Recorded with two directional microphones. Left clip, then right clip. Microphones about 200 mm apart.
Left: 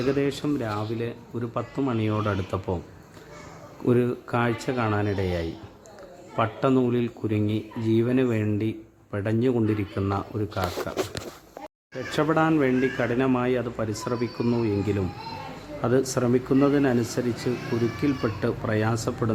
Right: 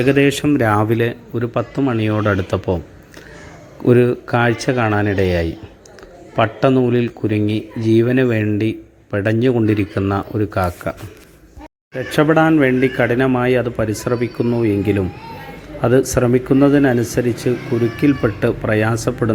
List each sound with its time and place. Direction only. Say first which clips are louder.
0.0 s a man's voice: right 11 dB; 20° right (ahead or behind)
0.6 s speech: right 14 dB; 45° right (ahead or behind)
0.9 s a man's voice: right 12 dB; 25° right (ahead or behind)
3.8 s a man's voice: right 10 dB; 15° right (ahead or behind)
12.1 s a man's voice: right 9 dB; 15° right (ahead or behind)